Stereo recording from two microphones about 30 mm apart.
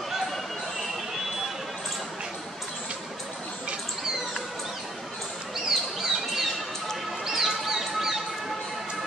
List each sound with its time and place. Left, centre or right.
5.7 s bird: centre
7.2 s music: centre